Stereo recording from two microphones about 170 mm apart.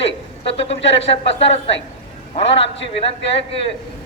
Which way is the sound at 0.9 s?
35° left (ahead or behind).